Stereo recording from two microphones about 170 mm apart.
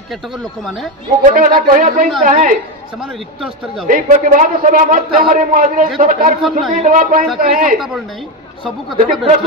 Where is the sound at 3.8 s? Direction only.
50° right (ahead or behind).